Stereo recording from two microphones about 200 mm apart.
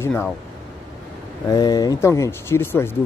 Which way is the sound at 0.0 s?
10° left (ahead or behind).